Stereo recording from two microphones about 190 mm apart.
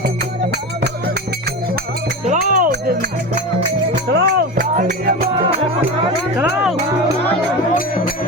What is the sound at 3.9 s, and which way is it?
Music, 60° right (ahead or behind).